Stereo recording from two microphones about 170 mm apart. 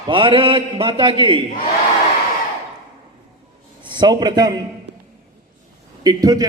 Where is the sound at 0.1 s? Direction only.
30° right (ahead or behind).